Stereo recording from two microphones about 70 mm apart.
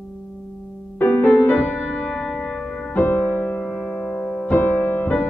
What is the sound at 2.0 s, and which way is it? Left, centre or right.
Music, centre.